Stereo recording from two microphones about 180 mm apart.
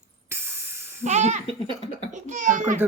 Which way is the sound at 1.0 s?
40° right (ahead or behind).